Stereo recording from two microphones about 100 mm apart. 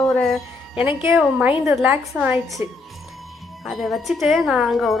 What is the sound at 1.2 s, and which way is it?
A woman's voice, 10° right (ahead or behind).